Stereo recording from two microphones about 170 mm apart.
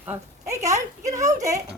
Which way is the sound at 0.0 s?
15° right (ahead or behind).